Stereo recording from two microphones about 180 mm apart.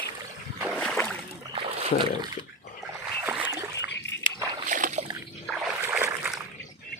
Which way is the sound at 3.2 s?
10° right (ahead or behind).